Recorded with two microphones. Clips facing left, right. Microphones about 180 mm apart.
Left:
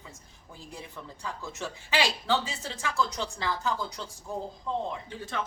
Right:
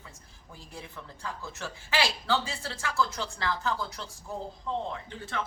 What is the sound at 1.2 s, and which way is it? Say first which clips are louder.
Speech: left 2 dB; 15° left (ahead or behind).